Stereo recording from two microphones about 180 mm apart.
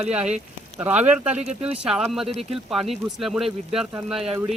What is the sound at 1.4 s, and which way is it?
Speech, 35° right (ahead or behind).